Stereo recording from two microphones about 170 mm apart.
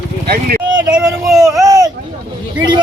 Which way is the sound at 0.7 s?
25° right (ahead or behind).